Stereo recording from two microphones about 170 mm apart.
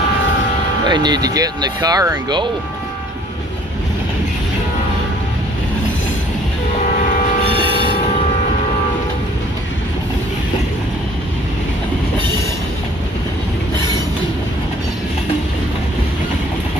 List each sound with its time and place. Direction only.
0.8 s speech: 25° right (ahead or behind)